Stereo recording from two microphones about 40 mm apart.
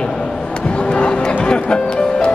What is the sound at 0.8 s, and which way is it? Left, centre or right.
Music, left.